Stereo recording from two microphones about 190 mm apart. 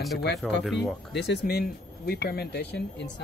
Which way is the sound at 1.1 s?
60° left (ahead or behind).